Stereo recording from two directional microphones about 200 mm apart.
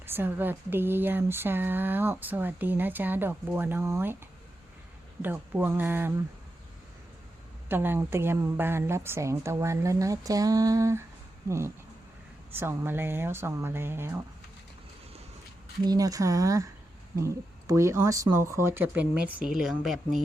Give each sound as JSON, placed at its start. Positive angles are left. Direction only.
{"t": 0.0, "sound": "speech", "side_deg": -10}
{"t": 5.2, "sound": "speech", "side_deg": -10}
{"t": 7.7, "sound": "speech", "side_deg": -10}
{"t": 15.9, "sound": "speech", "side_deg": -20}